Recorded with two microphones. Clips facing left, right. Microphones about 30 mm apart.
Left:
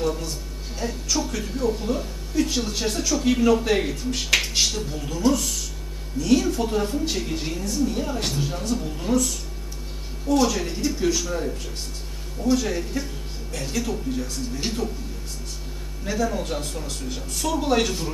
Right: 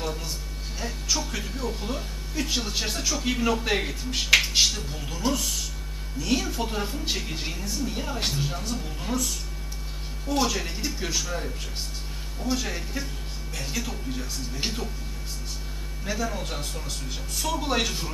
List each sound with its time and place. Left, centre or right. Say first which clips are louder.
0.0 s a sound: left 6 dB; centre
0.7 s speech: left 3 dB; centre
16.1 s speech: left 5 dB; centre